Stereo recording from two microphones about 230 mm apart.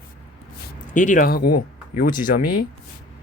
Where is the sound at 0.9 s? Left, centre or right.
Left.